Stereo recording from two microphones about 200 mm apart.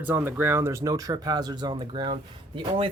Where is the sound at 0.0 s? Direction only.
10° right (ahead or behind).